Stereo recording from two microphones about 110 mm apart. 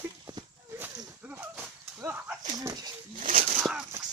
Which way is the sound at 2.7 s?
40° right (ahead or behind).